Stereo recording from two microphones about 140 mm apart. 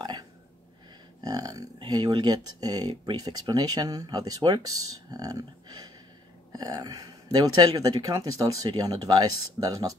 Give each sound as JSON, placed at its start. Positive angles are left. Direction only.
{"t": 1.2, "sound": "speech", "side_deg": -25}